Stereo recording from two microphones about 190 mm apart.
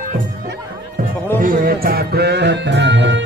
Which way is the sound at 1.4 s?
50° right (ahead or behind).